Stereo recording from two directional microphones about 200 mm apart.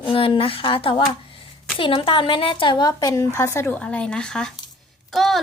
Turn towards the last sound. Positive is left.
turn(degrees=0)  # may be behind; listen again after turning